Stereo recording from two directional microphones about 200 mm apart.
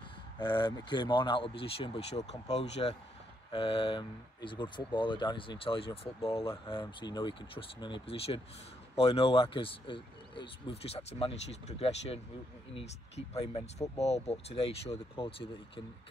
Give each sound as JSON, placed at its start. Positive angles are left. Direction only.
{"t": 0.4, "sound": "speech", "side_deg": 25}